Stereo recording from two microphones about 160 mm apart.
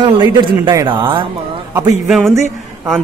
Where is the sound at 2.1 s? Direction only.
Centre (ahead or behind).